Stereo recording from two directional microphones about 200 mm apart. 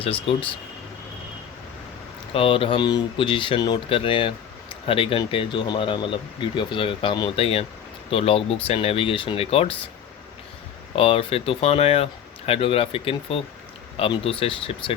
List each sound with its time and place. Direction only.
0.0 s speech: 25° left (ahead or behind)
2.3 s speech: 25° left (ahead or behind)
10.9 s speech: 30° left (ahead or behind)